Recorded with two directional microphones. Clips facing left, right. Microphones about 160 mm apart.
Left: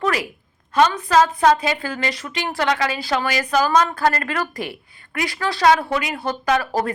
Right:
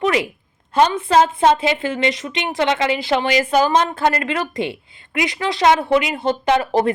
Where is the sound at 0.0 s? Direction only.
20° right (ahead or behind).